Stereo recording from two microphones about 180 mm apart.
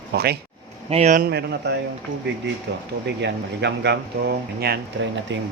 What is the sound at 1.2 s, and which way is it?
Speech, 65° right (ahead or behind).